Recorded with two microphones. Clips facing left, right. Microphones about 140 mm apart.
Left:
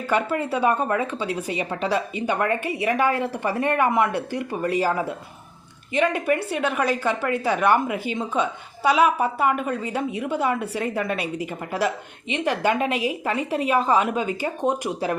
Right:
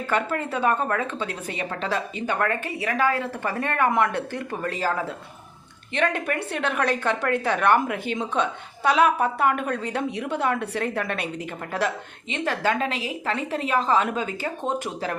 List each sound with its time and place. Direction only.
0.1 s a woman's voice: 10° left (ahead or behind)